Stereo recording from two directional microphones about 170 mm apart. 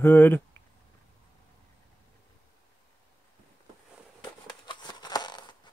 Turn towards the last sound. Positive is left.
turn(degrees=25)  # may be behind; listen again after turning